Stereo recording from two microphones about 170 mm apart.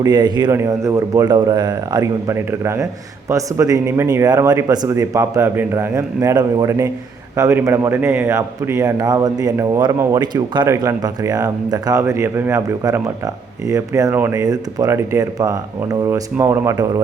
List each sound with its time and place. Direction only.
0.0 s a man's voice: 25° right (ahead or behind)